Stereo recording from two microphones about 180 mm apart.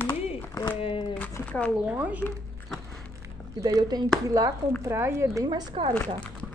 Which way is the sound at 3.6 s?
20° right (ahead or behind).